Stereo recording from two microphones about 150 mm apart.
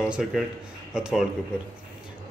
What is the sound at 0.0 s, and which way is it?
Speech, 5° right (ahead or behind).